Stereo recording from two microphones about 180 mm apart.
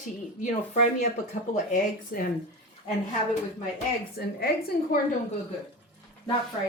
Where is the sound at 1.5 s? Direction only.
45° left (ahead or behind).